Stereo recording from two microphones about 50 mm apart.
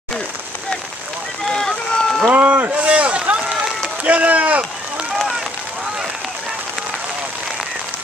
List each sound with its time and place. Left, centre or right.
1.5 s run: centre
2.3 s run: right
4.0 s rowboat: right